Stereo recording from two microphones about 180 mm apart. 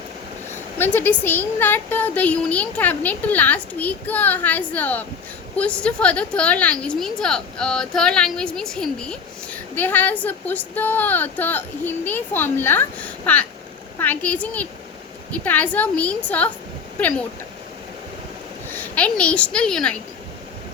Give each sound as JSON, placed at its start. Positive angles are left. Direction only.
{"t": 0.8, "sound": "a woman's voice", "side_deg": 10}
{"t": 18.7, "sound": "a child's voice", "side_deg": 10}